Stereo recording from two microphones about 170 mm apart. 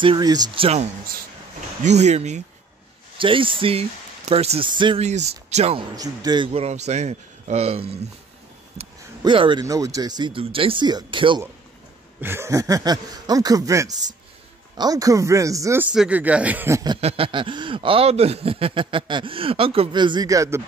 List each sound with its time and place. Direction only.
0.0 s speech: 25° right (ahead or behind)
1.8 s speech: 40° right (ahead or behind)
3.2 s speech: 30° right (ahead or behind)
5.0 s speech: 40° right (ahead or behind)
5.9 s speech: 25° right (ahead or behind)
12.2 s speech: 15° right (ahead or behind)
17.0 s speech: 30° right (ahead or behind)